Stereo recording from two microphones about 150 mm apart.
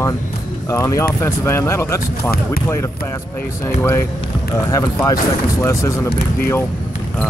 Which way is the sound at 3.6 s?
15° left (ahead or behind).